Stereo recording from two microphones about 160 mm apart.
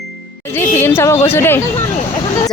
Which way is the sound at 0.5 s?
15° left (ahead or behind).